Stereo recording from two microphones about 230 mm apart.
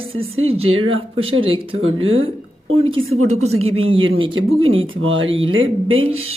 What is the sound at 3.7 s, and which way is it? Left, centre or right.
Speech, right.